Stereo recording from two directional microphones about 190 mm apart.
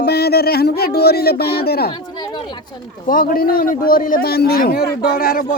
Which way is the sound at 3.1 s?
50° left (ahead or behind).